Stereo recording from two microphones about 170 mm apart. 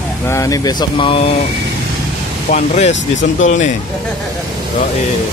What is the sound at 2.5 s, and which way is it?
Speech, 40° left (ahead or behind).